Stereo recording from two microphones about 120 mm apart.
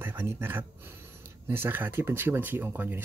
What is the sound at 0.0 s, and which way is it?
Speech, 15° right (ahead or behind).